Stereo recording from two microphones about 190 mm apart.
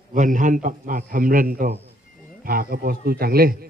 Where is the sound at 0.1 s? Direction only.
40° right (ahead or behind).